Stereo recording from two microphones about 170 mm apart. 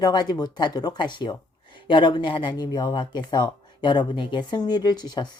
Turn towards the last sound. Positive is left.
turn(degrees=25)  # may be behind; listen again after turning